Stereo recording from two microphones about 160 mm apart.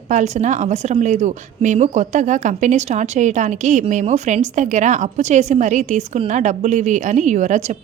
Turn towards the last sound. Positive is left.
turn(degrees=-50)  # may be behind; listen again after turning